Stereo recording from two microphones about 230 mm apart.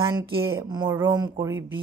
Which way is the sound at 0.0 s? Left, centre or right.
Centre.